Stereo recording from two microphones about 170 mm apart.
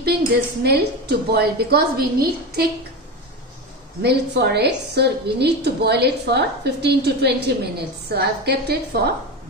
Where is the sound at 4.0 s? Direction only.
75° right (ahead or behind).